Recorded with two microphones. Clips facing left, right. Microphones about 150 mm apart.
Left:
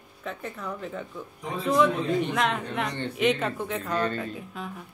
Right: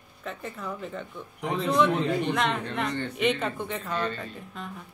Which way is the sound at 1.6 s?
Centre (ahead or behind).